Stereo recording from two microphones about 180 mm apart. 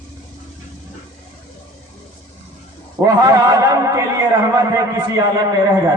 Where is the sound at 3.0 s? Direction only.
20° right (ahead or behind).